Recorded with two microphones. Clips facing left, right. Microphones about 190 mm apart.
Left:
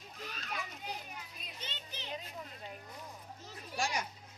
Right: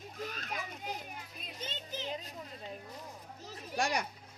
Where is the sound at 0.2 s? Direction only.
45° right (ahead or behind).